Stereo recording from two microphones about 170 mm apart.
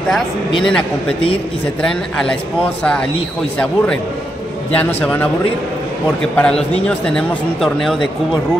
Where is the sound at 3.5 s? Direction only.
10° left (ahead or behind).